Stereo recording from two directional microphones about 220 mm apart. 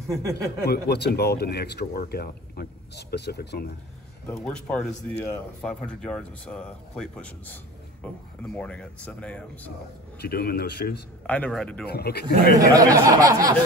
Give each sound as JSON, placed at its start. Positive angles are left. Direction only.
{"t": 0.0, "sound": "speech", "side_deg": -15}
{"t": 0.7, "sound": "speech", "side_deg": 50}
{"t": 4.3, "sound": "speech", "side_deg": 5}
{"t": 10.2, "sound": "speech", "side_deg": 45}
{"t": 11.2, "sound": "speech", "side_deg": 5}
{"t": 11.9, "sound": "speech", "side_deg": 45}
{"t": 12.5, "sound": "speech", "side_deg": -15}